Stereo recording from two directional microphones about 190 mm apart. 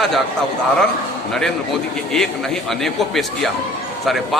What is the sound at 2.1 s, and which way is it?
A man's voice, centre (ahead or behind).